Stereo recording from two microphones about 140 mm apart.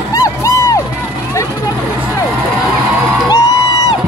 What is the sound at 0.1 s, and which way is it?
Music, 20° left (ahead or behind).